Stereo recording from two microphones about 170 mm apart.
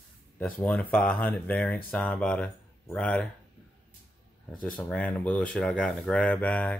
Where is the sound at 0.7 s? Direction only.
5° left (ahead or behind).